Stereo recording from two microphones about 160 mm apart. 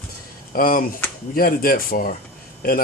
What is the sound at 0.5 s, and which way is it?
Speech, 60° left (ahead or behind).